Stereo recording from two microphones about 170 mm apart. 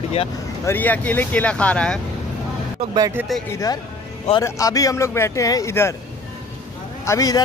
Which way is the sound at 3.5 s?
20° left (ahead or behind).